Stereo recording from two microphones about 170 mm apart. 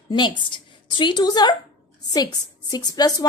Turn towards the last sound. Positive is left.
turn(degrees=20)  # may be behind; listen again after turning